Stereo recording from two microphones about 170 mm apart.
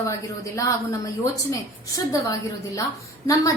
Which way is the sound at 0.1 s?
20° left (ahead or behind).